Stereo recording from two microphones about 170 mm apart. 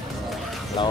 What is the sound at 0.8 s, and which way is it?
Speech, 25° left (ahead or behind).